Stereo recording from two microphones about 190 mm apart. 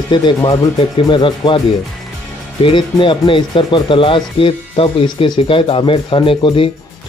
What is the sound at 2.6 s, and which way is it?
Speech, 25° left (ahead or behind).